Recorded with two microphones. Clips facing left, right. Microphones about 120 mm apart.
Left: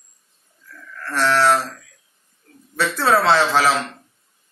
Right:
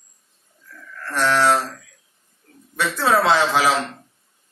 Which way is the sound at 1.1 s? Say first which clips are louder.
Left 1 dB; 15° right (ahead or behind).